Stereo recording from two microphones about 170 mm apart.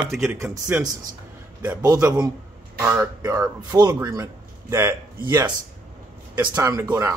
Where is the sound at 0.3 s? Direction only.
15° right (ahead or behind).